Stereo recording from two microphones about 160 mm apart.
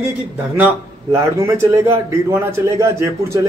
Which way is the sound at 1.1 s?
20° right (ahead or behind).